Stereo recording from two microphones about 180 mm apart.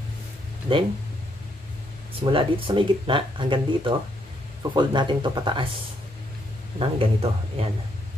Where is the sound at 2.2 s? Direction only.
30° right (ahead or behind).